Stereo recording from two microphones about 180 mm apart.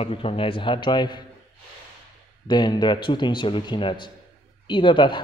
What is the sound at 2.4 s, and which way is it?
A man's voice, 25° left (ahead or behind).